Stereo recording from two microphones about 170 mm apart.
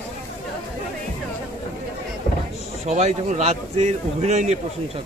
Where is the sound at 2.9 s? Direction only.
45° right (ahead or behind).